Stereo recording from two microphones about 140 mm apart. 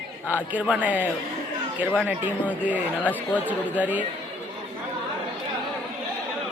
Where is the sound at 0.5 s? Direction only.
10° right (ahead or behind).